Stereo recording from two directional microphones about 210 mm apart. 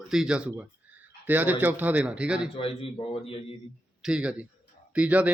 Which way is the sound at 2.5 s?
25° left (ahead or behind).